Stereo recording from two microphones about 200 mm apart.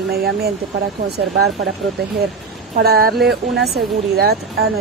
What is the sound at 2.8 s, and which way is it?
Speech, 50° right (ahead or behind).